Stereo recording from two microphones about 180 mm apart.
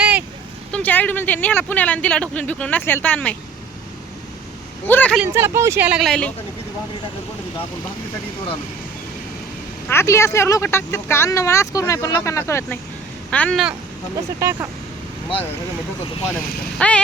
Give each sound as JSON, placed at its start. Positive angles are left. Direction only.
{"t": 0.0, "sound": "a sound", "side_deg": -10}
{"t": 0.7, "sound": "speech", "side_deg": 10}
{"t": 4.9, "sound": "speech", "side_deg": 10}
{"t": 5.3, "sound": "speech", "side_deg": -15}
{"t": 9.9, "sound": "speech", "side_deg": 15}
{"t": 14.3, "sound": "speech", "side_deg": -15}
{"t": 16.7, "sound": "speech", "side_deg": 5}